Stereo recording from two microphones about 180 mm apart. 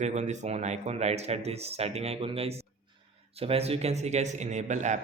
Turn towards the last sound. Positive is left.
turn(degrees=-40)  # may be behind; listen again after turning